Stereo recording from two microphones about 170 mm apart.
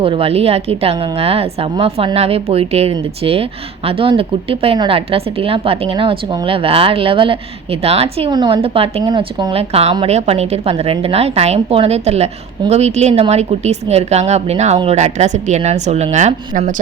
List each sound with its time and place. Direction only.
0.0 s a woman's voice: 35° right (ahead or behind)
8.3 s a woman's voice: 25° right (ahead or behind); by 16.8 s 50° right (ahead or behind)